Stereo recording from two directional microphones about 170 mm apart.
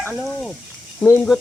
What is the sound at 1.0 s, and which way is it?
Speech, 15° left (ahead or behind).